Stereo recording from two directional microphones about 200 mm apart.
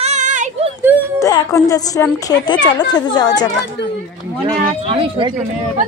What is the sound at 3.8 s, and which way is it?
Speech, 60° left (ahead or behind).